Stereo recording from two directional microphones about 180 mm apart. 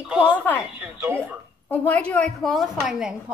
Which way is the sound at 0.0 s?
5° right (ahead or behind).